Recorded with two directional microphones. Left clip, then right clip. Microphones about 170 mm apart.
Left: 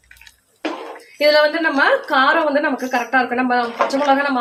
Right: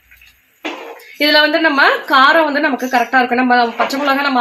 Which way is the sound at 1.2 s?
50° right (ahead or behind).